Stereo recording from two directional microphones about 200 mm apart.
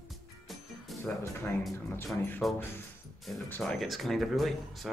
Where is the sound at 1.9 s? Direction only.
10° left (ahead or behind).